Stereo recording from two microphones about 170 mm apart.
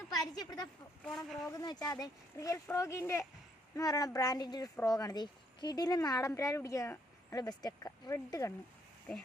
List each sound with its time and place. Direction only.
0.3 s a sound: 25° left (ahead or behind)
1.0 s speech: centre (ahead or behind)
1.5 s speech: 25° left (ahead or behind)